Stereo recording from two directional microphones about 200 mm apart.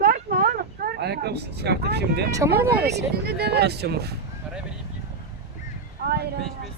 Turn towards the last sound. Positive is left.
turn(degrees=-55)  # may be behind; listen again after turning